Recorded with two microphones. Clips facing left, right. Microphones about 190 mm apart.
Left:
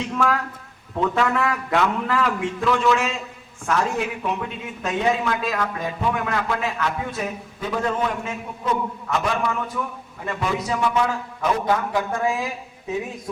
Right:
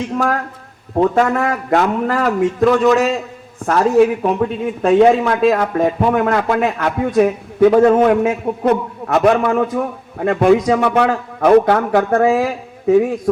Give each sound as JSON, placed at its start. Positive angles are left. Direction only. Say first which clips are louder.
{"t": 0.2, "sound": "a man's voice", "louder": "right 1 dB", "side_deg": -45}
{"t": 7.2, "sound": "a man's voice", "louder": "right 17 dB", "side_deg": -65}